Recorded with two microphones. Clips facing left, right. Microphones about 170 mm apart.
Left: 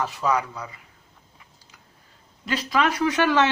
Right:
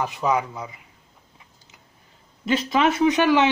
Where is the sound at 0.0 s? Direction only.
20° right (ahead or behind).